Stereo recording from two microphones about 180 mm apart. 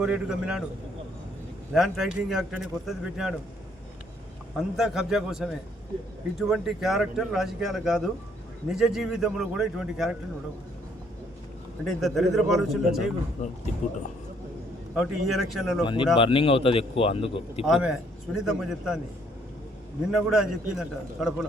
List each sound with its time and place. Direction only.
0.0 s speech: 5° right (ahead or behind)
1.7 s speech: centre (ahead or behind)
4.5 s speech: centre (ahead or behind)
11.9 s speech: centre (ahead or behind)
13.4 s speech: 40° left (ahead or behind)
14.9 s speech: centre (ahead or behind)
15.8 s speech: 25° left (ahead or behind)
17.7 s speech: 5° right (ahead or behind)
20.1 s speech: 5° right (ahead or behind)